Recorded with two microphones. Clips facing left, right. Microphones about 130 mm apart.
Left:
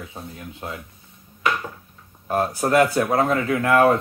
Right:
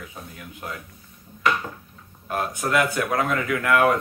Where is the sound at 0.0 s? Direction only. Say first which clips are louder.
Left 3 dB; 30° left (ahead or behind).